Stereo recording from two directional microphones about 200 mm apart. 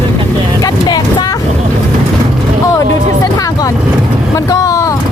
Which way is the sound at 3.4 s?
15° left (ahead or behind).